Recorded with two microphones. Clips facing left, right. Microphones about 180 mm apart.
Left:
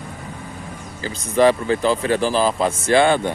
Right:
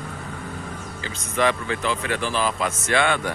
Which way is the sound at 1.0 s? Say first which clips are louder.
Left 7 dB; 35° left (ahead or behind).